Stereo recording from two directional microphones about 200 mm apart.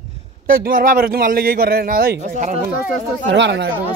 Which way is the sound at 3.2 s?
65° right (ahead or behind).